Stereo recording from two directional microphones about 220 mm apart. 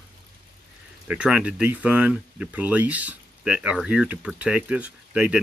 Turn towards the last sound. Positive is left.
turn(degrees=-5)  # may be behind; listen again after turning